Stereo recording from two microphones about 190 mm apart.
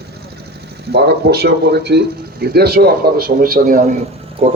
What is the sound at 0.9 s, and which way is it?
Speech, 55° right (ahead or behind).